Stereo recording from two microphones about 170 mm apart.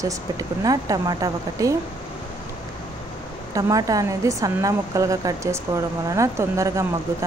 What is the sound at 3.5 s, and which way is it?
A woman's voice, 20° right (ahead or behind).